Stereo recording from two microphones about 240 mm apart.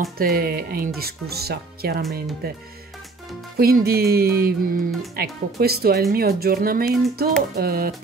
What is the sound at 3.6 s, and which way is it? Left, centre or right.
Speech, right.